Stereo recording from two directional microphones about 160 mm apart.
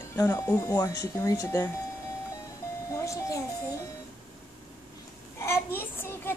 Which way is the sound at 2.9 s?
20° left (ahead or behind).